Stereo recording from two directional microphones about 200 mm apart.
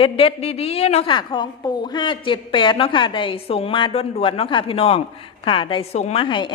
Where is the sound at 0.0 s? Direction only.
25° left (ahead or behind).